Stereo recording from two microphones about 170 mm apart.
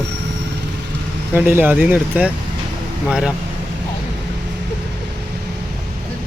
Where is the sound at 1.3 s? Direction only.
10° right (ahead or behind).